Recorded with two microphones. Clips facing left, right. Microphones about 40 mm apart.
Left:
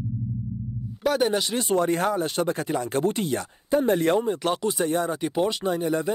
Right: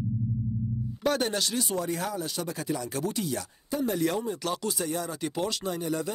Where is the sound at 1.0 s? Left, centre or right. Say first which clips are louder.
Left 5 dB; centre.